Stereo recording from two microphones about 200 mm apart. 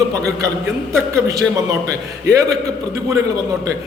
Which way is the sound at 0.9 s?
15° right (ahead or behind).